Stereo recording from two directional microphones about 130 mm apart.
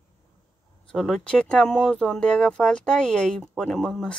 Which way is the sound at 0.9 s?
5° left (ahead or behind).